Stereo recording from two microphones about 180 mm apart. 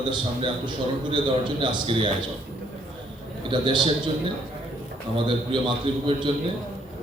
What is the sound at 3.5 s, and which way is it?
Speech, 25° right (ahead or behind).